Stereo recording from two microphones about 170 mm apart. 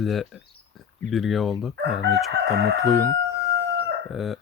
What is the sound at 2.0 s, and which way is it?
Crowing, 85° right.